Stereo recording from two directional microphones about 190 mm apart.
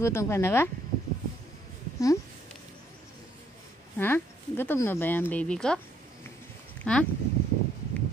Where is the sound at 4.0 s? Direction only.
10° left (ahead or behind).